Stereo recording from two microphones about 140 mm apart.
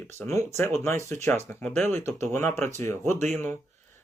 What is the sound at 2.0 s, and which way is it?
Speech, 20° left (ahead or behind).